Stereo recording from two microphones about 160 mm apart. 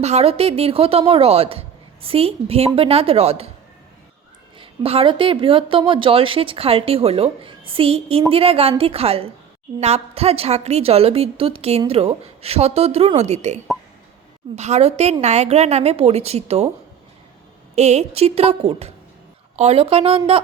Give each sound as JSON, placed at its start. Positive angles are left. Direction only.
{"t": 0.0, "sound": "a woman's voice", "side_deg": -40}
{"t": 4.6, "sound": "a woman's voice", "side_deg": -35}
{"t": 17.7, "sound": "a woman's voice", "side_deg": -40}